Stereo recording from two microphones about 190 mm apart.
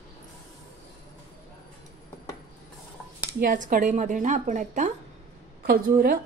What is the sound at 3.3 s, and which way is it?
A woman's voice, 45° right (ahead or behind).